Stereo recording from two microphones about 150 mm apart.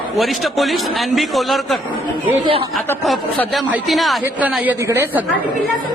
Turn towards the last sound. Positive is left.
turn(degrees=-15)  # may be behind; listen again after turning